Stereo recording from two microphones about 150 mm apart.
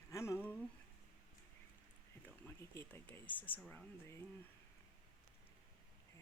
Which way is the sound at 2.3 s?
15° left (ahead or behind).